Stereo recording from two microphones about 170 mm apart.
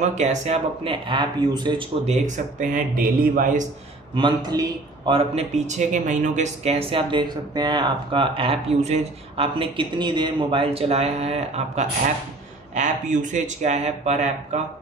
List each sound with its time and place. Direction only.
0.0 s speech: 45° right (ahead or behind); by 1.9 s 25° right (ahead or behind)
2.0 s speech: 45° right (ahead or behind)
4.1 s speech: 25° right (ahead or behind); by 14.6 s 45° right (ahead or behind)